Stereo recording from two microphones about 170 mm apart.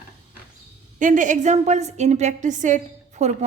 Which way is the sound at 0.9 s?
50° right (ahead or behind).